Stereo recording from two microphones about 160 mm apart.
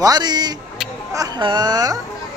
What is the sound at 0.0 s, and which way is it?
A man's voice, 25° right (ahead or behind).